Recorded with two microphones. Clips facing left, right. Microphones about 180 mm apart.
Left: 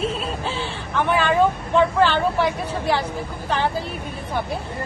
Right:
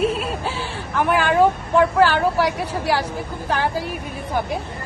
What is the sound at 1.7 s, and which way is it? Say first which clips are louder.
A woman's voice: right 2 dB; 10° right (ahead or behind).